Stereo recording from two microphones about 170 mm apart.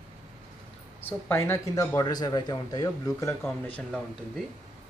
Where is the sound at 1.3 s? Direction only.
15° left (ahead or behind).